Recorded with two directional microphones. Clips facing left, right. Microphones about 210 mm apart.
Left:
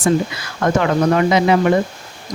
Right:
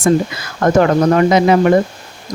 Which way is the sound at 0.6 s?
45° right (ahead or behind).